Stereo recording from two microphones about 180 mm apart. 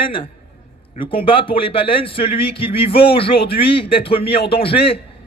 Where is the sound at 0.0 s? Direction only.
30° left (ahead or behind).